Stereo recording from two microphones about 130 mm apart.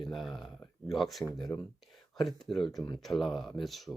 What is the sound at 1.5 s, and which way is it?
Speech, 15° left (ahead or behind).